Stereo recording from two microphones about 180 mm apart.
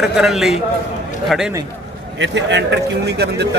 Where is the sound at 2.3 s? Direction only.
75° right (ahead or behind).